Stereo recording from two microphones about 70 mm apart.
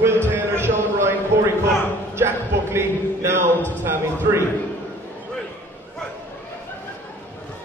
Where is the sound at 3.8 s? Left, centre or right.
Right.